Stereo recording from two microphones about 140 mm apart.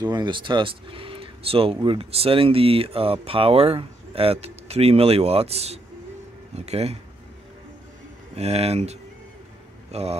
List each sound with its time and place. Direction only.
0.0 s speech: 30° right (ahead or behind); by 7.0 s 50° right (ahead or behind)
8.4 s speech: 50° right (ahead or behind)